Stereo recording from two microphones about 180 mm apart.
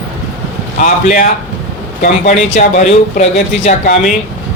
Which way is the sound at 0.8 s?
50° left (ahead or behind).